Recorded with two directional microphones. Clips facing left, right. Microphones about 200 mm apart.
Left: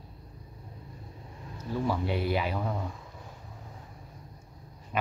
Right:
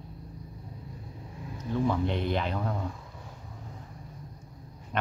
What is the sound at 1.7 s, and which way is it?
Speech, 5° left (ahead or behind).